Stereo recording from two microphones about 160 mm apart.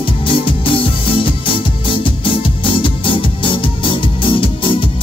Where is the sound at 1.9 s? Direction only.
30° left (ahead or behind).